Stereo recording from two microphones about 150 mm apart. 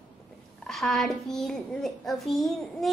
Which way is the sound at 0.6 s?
Centre (ahead or behind).